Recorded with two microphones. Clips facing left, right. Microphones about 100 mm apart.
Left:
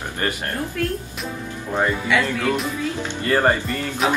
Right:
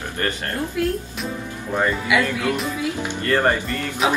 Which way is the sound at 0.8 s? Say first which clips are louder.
Right 3 dB; 10° right (ahead or behind).